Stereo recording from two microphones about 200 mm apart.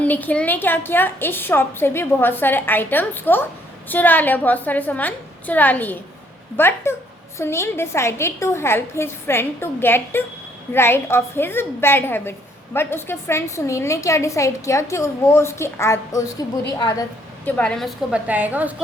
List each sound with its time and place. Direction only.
0.0 s a woman's voice: 10° left (ahead or behind)
17.6 s a woman's voice: centre (ahead or behind)